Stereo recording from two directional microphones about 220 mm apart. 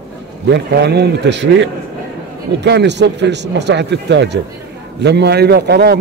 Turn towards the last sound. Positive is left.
turn(degrees=-45)  # may be behind; listen again after turning